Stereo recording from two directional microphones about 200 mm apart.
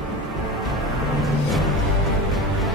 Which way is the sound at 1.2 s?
Centre (ahead or behind).